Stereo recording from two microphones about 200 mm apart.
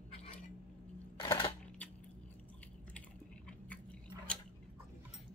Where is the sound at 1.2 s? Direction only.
20° left (ahead or behind).